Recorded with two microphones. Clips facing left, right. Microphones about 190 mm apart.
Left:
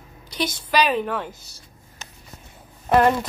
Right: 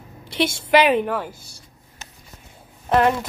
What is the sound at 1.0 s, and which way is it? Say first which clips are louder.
Speech: right 2 dB; 10° right (ahead or behind).